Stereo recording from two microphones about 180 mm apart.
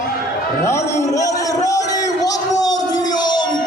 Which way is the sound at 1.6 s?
20° left (ahead or behind).